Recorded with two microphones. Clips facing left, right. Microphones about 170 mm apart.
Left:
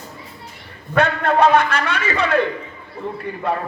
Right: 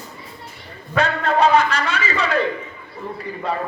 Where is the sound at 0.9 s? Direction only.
60° left (ahead or behind).